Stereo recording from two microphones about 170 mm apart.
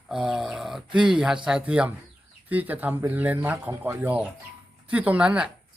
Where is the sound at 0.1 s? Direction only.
5° right (ahead or behind).